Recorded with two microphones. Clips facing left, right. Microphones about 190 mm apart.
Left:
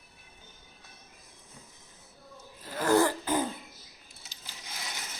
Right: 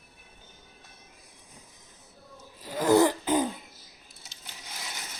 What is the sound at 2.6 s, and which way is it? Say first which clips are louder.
Throat clearing: right 3 dB; 15° right (ahead or behind).